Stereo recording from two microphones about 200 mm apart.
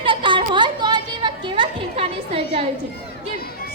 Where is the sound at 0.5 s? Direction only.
20° right (ahead or behind).